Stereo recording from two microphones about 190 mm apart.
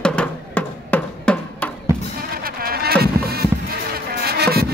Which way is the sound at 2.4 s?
50° right (ahead or behind).